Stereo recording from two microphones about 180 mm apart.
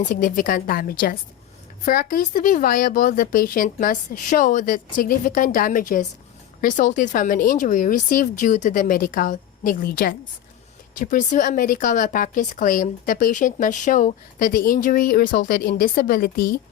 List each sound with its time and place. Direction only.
0.0 s speech: 45° left (ahead or behind)